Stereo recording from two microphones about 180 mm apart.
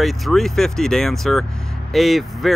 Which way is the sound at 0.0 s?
Centre (ahead or behind).